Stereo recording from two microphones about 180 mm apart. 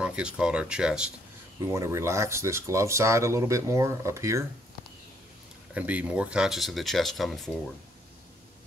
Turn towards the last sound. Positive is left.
turn(degrees=0)  # may be behind; listen again after turning